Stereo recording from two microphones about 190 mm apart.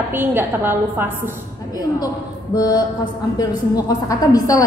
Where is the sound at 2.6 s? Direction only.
20° left (ahead or behind).